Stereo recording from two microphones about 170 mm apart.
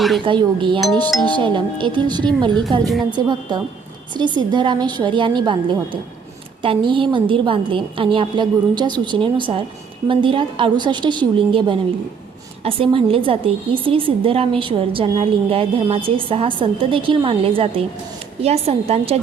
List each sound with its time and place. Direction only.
0.3 s a woman's voice: 30° right (ahead or behind)